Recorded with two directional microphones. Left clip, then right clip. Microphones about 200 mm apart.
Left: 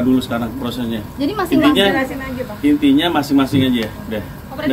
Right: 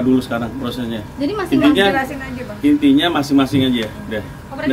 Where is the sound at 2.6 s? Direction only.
5° right (ahead or behind).